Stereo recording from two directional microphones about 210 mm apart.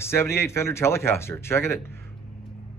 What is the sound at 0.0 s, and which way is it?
Speech, 10° left (ahead or behind).